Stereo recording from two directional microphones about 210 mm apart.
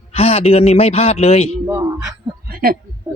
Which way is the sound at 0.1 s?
30° left (ahead or behind).